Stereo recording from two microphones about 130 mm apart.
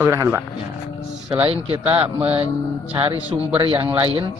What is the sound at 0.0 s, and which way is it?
Speech, 20° right (ahead or behind).